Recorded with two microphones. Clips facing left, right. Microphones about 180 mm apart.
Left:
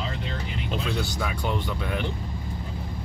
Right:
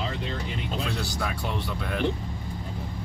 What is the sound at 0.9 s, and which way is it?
Speech, centre (ahead or behind).